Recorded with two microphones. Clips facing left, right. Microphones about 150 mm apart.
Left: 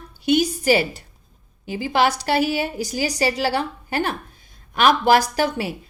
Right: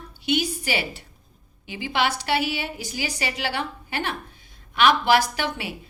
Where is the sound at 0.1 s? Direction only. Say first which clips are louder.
Left 6 dB; 45° left (ahead or behind).